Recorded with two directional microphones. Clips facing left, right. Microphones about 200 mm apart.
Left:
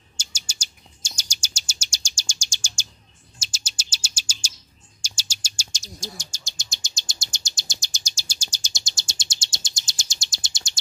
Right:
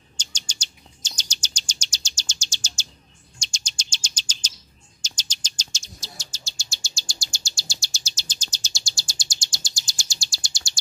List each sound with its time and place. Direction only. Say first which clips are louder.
0.2 s chirp: right 1 dB; 10° left (ahead or behind)
3.3 s bird: even; 5° left (ahead or behind)
5.0 s chirp: even; 10° left (ahead or behind)